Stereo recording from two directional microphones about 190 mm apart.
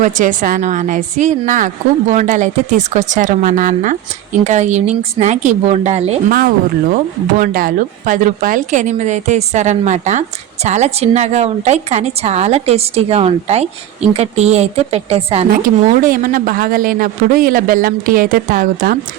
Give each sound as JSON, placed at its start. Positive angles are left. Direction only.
{"t": 0.0, "sound": "a woman's voice", "side_deg": -45}
{"t": 7.3, "sound": "a woman's voice", "side_deg": -45}
{"t": 15.4, "sound": "speech", "side_deg": -45}